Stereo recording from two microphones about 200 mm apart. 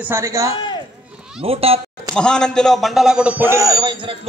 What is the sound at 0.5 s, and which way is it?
Speech, 25° left (ahead or behind).